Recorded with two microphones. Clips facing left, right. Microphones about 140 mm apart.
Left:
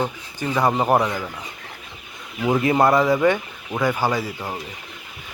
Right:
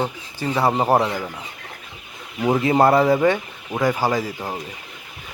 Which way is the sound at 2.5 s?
30° right (ahead or behind).